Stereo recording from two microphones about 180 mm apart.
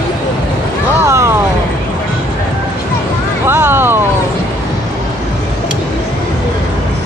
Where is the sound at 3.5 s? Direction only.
15° right (ahead or behind).